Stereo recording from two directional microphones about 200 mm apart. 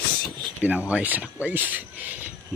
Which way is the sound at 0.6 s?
5° right (ahead or behind).